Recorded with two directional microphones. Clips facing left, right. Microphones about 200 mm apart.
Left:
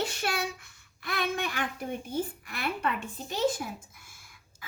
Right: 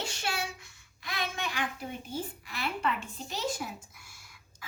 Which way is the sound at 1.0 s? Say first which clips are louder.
Left 5 dB; 55° left (ahead or behind).